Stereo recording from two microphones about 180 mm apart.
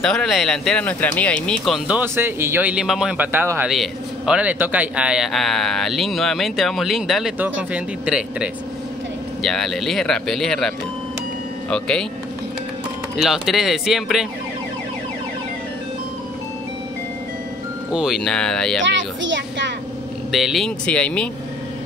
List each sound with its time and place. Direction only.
0.0 s a man's voice: 5° left (ahead or behind)
1.9 s a man's voice: 10° right (ahead or behind)
11.7 s a man's voice: 5° left (ahead or behind)
13.1 s a man's voice: centre (ahead or behind)
17.9 s a man's voice: centre (ahead or behind)
18.8 s a child's voice: 90° right
20.2 s a man's voice: centre (ahead or behind)